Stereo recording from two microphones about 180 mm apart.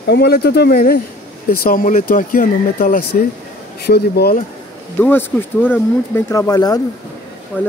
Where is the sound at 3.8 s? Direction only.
65° left (ahead or behind).